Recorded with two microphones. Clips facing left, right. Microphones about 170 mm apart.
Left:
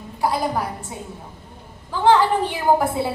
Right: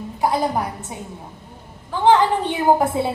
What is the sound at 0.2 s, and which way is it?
Speech, 20° right (ahead or behind).